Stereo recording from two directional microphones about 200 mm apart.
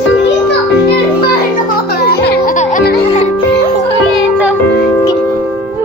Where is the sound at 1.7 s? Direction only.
50° left (ahead or behind).